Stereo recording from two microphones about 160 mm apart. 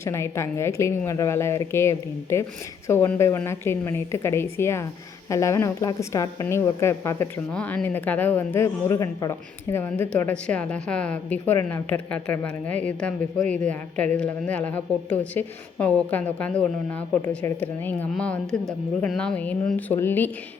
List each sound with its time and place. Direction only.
0.0 s a woman's voice: 15° left (ahead or behind)